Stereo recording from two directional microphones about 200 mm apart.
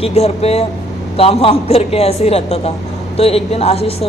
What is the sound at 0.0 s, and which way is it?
A woman's voice, 30° left (ahead or behind).